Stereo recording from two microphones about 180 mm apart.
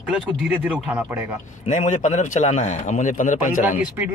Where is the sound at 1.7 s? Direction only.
40° left (ahead or behind).